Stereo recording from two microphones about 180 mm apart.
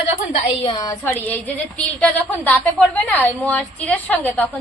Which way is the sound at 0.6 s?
20° left (ahead or behind).